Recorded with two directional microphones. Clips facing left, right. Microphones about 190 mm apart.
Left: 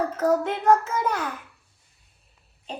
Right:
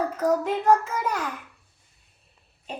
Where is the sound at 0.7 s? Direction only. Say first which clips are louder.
Left 2 dB; 5° left (ahead or behind).